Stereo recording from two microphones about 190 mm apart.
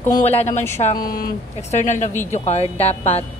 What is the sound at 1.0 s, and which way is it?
A woman's voice, 50° left (ahead or behind).